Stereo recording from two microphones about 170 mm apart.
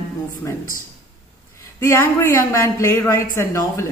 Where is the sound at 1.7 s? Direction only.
15° left (ahead or behind).